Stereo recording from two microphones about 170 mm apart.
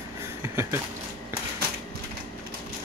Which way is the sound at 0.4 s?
15° right (ahead or behind).